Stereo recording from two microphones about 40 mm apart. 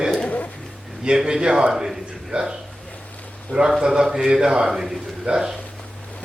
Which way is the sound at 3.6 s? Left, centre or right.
Centre.